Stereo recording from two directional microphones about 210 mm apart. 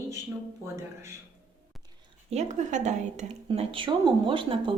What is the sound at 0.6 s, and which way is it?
Speech, 10° right (ahead or behind).